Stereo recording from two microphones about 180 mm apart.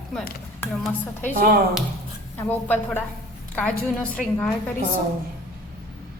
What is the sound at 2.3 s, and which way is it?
A woman's voice, 10° left (ahead or behind).